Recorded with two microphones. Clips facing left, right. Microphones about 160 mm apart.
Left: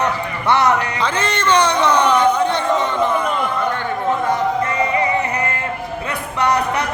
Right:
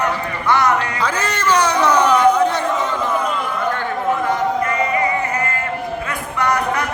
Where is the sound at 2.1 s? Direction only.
30° left (ahead or behind).